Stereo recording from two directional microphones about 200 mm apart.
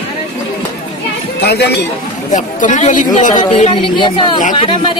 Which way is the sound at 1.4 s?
55° left (ahead or behind).